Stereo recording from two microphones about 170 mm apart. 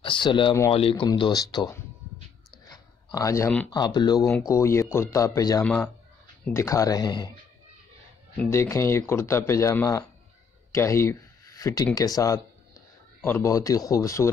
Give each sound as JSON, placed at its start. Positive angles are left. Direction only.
{"t": 0.0, "sound": "speech", "side_deg": 30}
{"t": 2.7, "sound": "a sound", "side_deg": 20}
{"t": 3.7, "sound": "speech", "side_deg": 25}
{"t": 4.2, "sound": "speech", "side_deg": 0}
{"t": 4.5, "sound": "speech", "side_deg": 15}
{"t": 5.6, "sound": "speech", "side_deg": 10}
{"t": 8.4, "sound": "speech", "side_deg": 15}